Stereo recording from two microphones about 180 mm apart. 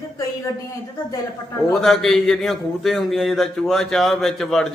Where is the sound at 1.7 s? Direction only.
Centre (ahead or behind).